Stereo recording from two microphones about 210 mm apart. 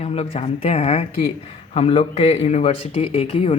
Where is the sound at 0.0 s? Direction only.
30° left (ahead or behind).